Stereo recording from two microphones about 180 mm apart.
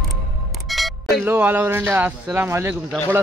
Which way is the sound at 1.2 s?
10° right (ahead or behind).